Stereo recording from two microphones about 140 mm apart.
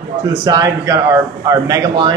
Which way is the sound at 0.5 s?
25° right (ahead or behind).